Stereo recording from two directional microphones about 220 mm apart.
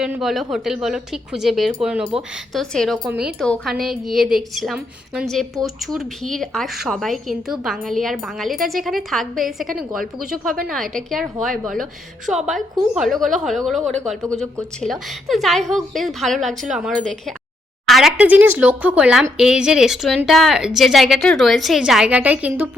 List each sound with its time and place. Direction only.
0.0 s speech: centre (ahead or behind)
10.0 s speech: 40° right (ahead or behind)
11.1 s speech: centre (ahead or behind)